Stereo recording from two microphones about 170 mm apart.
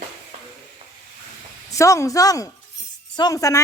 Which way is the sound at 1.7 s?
20° left (ahead or behind).